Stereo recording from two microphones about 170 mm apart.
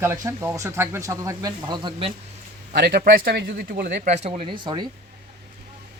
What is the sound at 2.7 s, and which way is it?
Speech, 70° right (ahead or behind).